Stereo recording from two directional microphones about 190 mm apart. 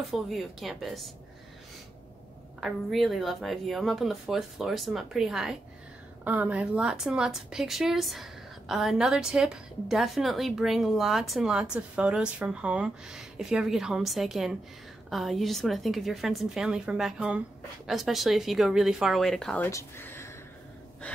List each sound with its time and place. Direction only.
0.1 s a woman's voice: centre (ahead or behind)
2.6 s a woman's voice: centre (ahead or behind)